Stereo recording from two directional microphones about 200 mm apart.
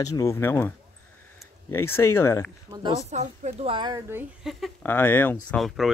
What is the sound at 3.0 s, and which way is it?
Speech, 35° right (ahead or behind).